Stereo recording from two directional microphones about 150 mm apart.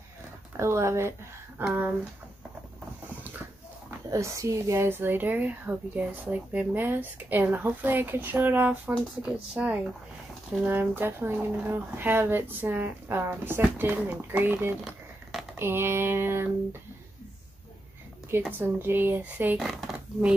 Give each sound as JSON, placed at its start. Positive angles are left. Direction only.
{"t": 0.6, "sound": "speech", "side_deg": -20}
{"t": 4.1, "sound": "speech", "side_deg": -20}
{"t": 18.3, "sound": "speech", "side_deg": -15}